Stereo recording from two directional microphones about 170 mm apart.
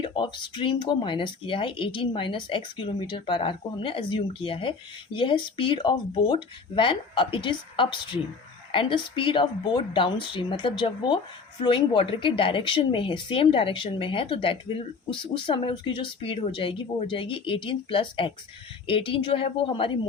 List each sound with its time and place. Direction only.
0.0 s speech: 30° left (ahead or behind)